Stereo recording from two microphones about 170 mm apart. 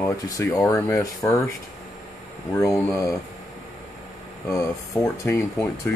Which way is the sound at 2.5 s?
15° left (ahead or behind).